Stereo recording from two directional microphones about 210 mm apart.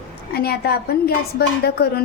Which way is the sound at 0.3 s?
50° left (ahead or behind).